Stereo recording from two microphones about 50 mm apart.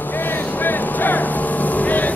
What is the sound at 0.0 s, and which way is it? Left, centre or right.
Vehicle, left.